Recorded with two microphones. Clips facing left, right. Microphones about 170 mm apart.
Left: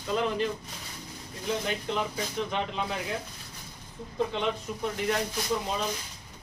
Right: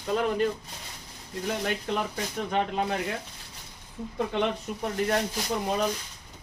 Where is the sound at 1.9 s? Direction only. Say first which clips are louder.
Right 1 dB; 50° right (ahead or behind).